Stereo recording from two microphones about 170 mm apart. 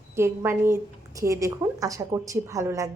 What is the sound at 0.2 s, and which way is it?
A woman's voice, 15° right (ahead or behind).